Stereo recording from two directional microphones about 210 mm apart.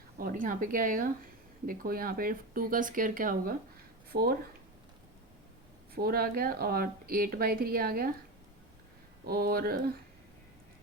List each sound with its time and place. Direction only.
0.2 s a woman's voice: 40° right (ahead or behind)
5.9 s a woman's voice: 45° right (ahead or behind)
9.2 s a woman's voice: 45° right (ahead or behind)